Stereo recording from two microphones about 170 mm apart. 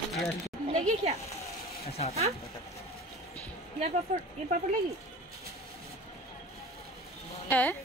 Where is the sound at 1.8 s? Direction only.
35° left (ahead or behind).